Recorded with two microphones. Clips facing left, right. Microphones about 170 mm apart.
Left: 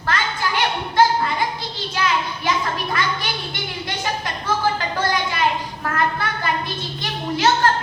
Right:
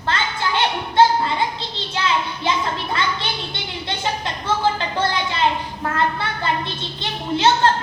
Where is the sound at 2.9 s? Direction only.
25° right (ahead or behind).